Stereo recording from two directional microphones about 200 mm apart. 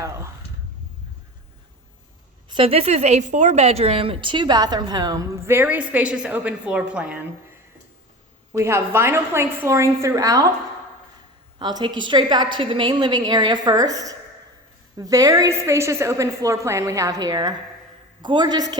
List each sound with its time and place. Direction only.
0.0 s speech: 15° right (ahead or behind)
2.5 s a woman's voice: 25° right (ahead or behind); by 7.3 s 5° right (ahead or behind)
8.5 s a woman's voice: 15° right (ahead or behind)
11.6 s a woman's voice: 20° right (ahead or behind)